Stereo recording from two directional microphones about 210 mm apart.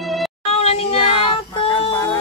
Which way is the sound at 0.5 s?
30° left (ahead or behind).